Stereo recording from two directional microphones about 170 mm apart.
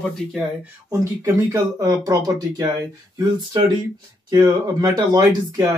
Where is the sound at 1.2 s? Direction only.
20° right (ahead or behind).